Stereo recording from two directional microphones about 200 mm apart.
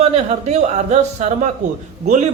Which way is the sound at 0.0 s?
35° right (ahead or behind).